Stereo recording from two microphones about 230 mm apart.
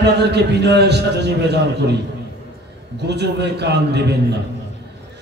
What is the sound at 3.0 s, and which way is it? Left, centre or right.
A man's voice, right.